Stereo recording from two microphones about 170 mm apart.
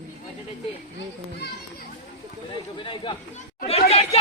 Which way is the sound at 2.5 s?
30° left (ahead or behind).